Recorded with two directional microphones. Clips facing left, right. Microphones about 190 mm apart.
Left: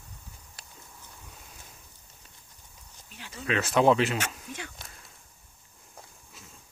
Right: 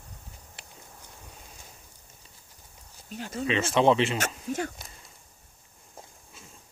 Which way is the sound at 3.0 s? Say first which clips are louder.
Right 11 dB; 45° right (ahead or behind).